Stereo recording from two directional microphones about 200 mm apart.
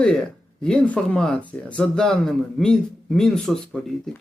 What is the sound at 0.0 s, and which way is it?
Speech, 5° left (ahead or behind).